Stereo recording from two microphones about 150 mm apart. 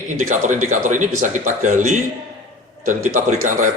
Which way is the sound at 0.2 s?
55° right (ahead or behind).